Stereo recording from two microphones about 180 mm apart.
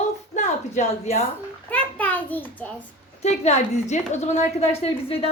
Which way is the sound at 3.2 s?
40° left (ahead or behind).